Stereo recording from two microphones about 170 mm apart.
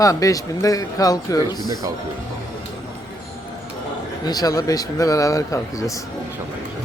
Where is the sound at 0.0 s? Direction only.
20° left (ahead or behind).